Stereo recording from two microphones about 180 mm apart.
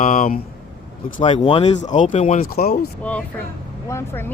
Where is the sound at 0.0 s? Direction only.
50° left (ahead or behind).